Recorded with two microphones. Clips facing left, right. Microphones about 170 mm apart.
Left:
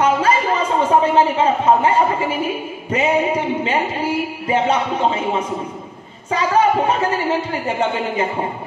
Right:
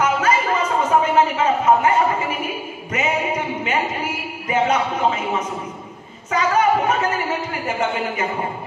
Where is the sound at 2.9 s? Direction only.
30° left (ahead or behind).